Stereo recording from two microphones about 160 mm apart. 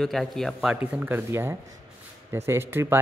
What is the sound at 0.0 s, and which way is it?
A man's voice, centre (ahead or behind).